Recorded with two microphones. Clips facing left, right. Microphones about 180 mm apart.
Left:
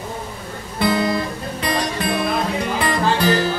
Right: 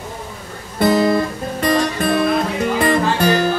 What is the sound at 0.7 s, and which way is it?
Music, 45° right (ahead or behind).